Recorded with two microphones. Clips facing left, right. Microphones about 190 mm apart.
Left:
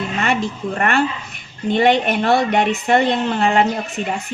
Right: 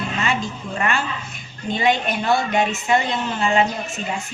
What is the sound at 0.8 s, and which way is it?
A woman's voice, 60° left (ahead or behind).